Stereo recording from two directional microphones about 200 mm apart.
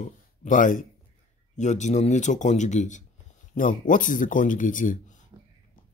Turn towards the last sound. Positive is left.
turn(degrees=40)  # may be behind; listen again after turning